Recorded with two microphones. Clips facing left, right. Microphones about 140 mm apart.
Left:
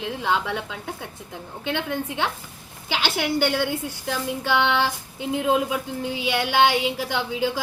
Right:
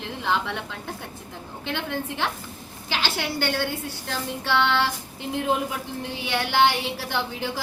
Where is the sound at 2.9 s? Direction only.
15° left (ahead or behind).